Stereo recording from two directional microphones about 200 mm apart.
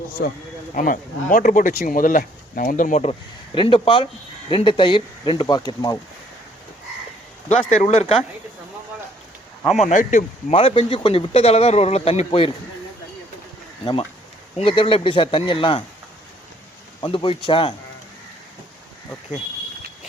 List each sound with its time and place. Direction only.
0.8 s speech: 40° left (ahead or behind); by 6.0 s 20° left (ahead or behind)
7.4 s speech: 35° left (ahead or behind)
9.7 s speech: 35° left (ahead or behind)
10.5 s speech: 30° left (ahead or behind)
14.6 s speech: 25° left (ahead or behind)
17.0 s speech: 25° left (ahead or behind)